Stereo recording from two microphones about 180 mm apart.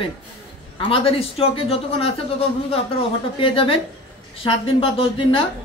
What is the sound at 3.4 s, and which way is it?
A man's voice, 30° left (ahead or behind).